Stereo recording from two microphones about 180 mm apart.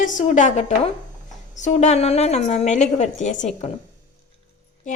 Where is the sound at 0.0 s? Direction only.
45° left (ahead or behind).